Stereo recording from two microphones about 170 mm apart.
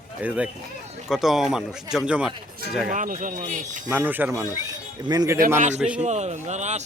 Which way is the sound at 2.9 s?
50° right (ahead or behind).